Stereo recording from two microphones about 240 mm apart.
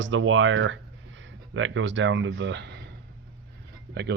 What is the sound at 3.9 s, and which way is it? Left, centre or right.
Speech, right.